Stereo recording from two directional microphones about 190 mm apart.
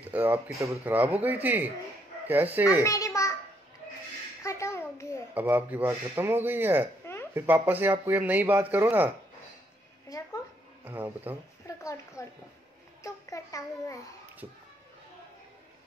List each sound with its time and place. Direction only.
0.0 s speech: 10° right (ahead or behind)
2.8 s a child's voice: 15° left (ahead or behind)
4.4 s a sound: 15° left (ahead or behind)
5.3 s speech: 10° right (ahead or behind)
10.0 s a sound: 20° left (ahead or behind)
10.8 s speech: 10° right (ahead or behind)
11.6 s a child's voice: 15° left (ahead or behind)